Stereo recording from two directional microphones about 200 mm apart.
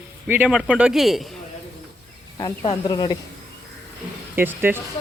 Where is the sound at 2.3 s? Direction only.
20° left (ahead or behind).